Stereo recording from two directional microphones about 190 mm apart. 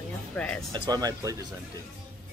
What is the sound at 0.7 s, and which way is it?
Speech, 20° right (ahead or behind).